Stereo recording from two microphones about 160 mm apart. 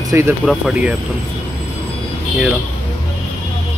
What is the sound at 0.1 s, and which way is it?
Speech, 15° right (ahead or behind).